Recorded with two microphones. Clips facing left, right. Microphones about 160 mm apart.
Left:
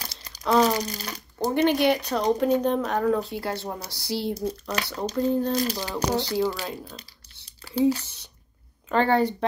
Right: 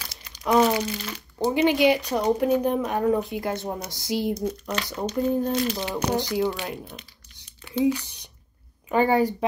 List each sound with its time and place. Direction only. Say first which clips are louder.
0.5 s crumpling: right 1 dB; 15° right (ahead or behind)
0.7 s speech: right 2 dB; 40° left (ahead or behind)
1.4 s speech: right 1 dB; 10° right (ahead or behind)
4.7 s speech: even; 35° left (ahead or behind)
5.1 s speech: even; 15° right (ahead or behind)
5.5 s speech: right 1 dB; 35° left (ahead or behind)
6.1 s speech: even; 15° right (ahead or behind)
7.4 s a sound: even; 35° left (ahead or behind)
8.0 s speech: right 1 dB; 15° right (ahead or behind)